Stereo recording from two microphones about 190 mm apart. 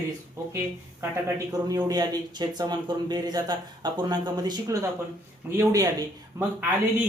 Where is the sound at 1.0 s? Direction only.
15° right (ahead or behind).